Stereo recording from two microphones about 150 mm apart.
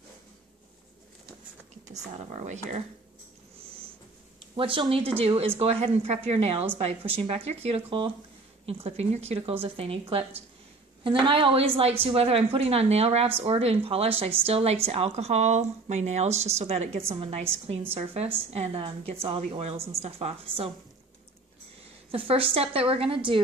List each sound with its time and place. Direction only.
2.3 s a woman's voice: 50° right (ahead or behind)
4.6 s a woman's voice: 35° right (ahead or behind)
22.1 s a woman's voice: 40° right (ahead or behind)